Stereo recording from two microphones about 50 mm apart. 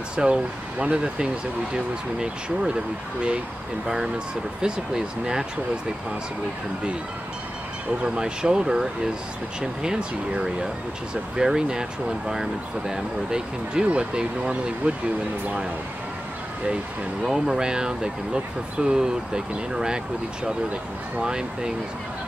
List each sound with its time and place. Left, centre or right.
0.1 s speech: centre
3.8 s speech: centre
8.0 s speech: centre
17.2 s speech: centre
21.2 s speech: centre